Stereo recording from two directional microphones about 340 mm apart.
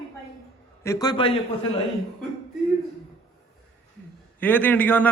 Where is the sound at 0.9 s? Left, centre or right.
Centre.